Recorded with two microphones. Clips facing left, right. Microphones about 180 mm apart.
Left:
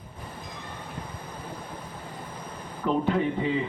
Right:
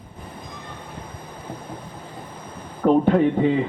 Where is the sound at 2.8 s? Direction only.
50° right (ahead or behind).